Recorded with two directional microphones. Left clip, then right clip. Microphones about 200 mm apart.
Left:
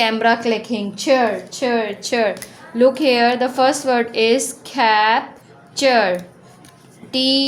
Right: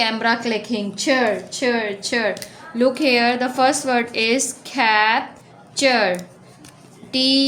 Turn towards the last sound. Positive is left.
turn(degrees=10)  # may be behind; listen again after turning